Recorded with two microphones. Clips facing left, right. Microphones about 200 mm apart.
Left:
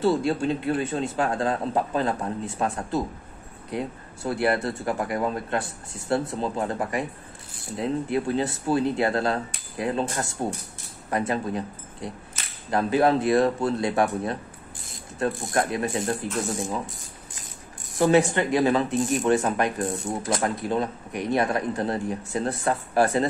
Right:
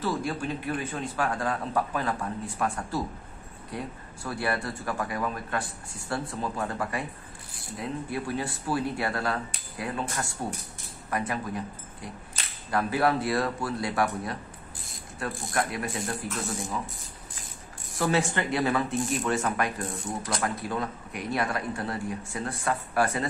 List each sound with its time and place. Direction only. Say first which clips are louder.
0.0 s speech: left 7 dB; 25° left (ahead or behind)
17.9 s speech: left 7 dB; 20° left (ahead or behind)
22.3 s speech: left 6 dB; 35° left (ahead or behind)